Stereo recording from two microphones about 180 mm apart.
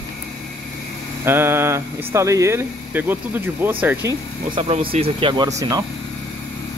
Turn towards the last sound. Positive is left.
turn(degrees=-20)  # may be behind; listen again after turning